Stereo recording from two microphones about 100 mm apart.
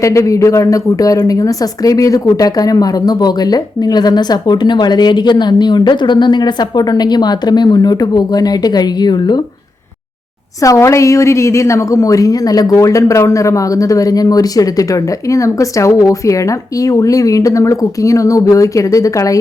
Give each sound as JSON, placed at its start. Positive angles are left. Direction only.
{"t": 0.0, "sound": "speech", "side_deg": 30}
{"t": 10.6, "sound": "a woman's voice", "side_deg": 30}